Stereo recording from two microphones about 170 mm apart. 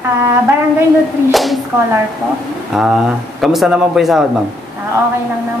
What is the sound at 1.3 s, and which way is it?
Speech, centre (ahead or behind).